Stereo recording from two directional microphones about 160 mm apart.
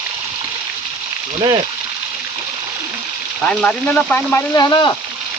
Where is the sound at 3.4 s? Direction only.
5° left (ahead or behind).